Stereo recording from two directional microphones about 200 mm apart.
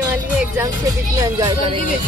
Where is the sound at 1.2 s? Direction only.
15° right (ahead or behind).